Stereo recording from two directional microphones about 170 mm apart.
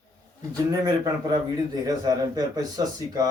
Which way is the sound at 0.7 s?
20° right (ahead or behind).